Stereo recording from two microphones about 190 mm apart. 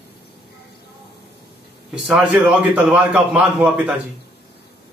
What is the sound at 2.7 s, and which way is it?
A man's voice, 5° right (ahead or behind).